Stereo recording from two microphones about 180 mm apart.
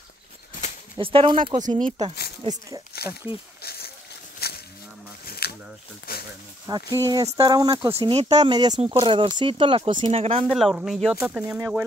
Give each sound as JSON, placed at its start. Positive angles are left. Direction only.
{"t": 0.9, "sound": "speech", "side_deg": -30}
{"t": 2.9, "sound": "a sound", "side_deg": 60}
{"t": 4.4, "sound": "a sound", "side_deg": 60}
{"t": 6.6, "sound": "speech", "side_deg": -20}
{"t": 7.9, "sound": "speech", "side_deg": -35}
{"t": 8.5, "sound": "speech", "side_deg": -25}
{"t": 10.5, "sound": "speech", "side_deg": 0}